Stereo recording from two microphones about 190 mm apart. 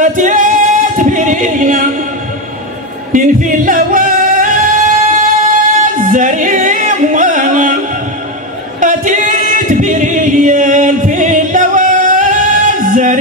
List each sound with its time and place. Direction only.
0.0 s a capella: 45° right (ahead or behind)
3.1 s music: 45° right (ahead or behind)
8.7 s a capella: 40° right (ahead or behind)